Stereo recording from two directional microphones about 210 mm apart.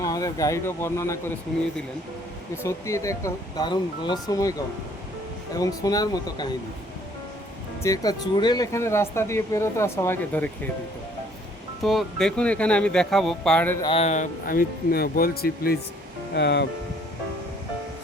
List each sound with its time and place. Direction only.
0.0 s speech: 15° left (ahead or behind)
2.6 s speech: 15° left (ahead or behind)
5.5 s speech: 15° left (ahead or behind)
7.8 s speech: 15° left (ahead or behind)
11.8 s speech: centre (ahead or behind)
13.8 s speech: 30° left (ahead or behind); by 16.6 s 55° left (ahead or behind)